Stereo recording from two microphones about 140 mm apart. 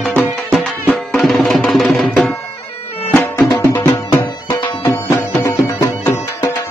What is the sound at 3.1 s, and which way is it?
Music, 15° left (ahead or behind).